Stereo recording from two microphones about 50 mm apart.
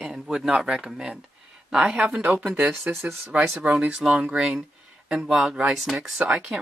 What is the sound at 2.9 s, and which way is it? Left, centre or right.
Speech, right.